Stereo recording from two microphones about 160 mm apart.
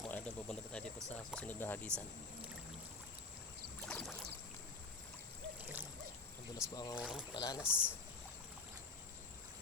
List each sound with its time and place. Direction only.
0.0 s a sound: 5° left (ahead or behind)
1.1 s speech: 10° left (ahead or behind)
3.8 s boat: 5° left (ahead or behind)
6.6 s speech: 20° left (ahead or behind)
7.0 s speech: 5° right (ahead or behind)
7.3 s speech: 25° left (ahead or behind)
7.6 s speech: 5° right (ahead or behind)